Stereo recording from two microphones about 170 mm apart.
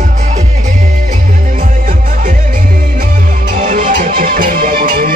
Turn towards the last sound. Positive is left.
turn(degrees=-60)  # may be behind; listen again after turning